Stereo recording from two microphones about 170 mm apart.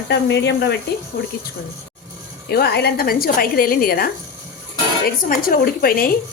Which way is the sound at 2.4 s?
70° left (ahead or behind).